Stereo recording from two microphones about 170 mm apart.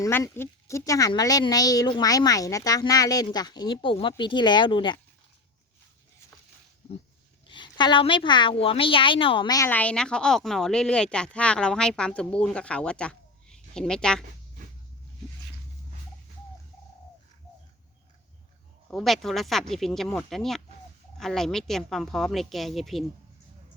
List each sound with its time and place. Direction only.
0.0 s speech: 20° left (ahead or behind)
7.4 s speech: 30° left (ahead or behind)
9.6 s speech: 10° left (ahead or behind)
18.9 s speech: centre (ahead or behind)